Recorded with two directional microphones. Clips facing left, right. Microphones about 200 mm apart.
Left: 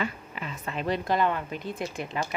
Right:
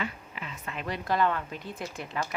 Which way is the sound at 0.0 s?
40° left (ahead or behind).